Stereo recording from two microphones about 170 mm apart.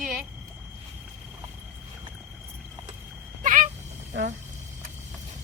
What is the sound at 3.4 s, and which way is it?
Vehicle, 50° right (ahead or behind).